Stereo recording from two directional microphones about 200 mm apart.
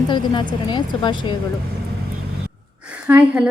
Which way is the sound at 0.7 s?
25° left (ahead or behind).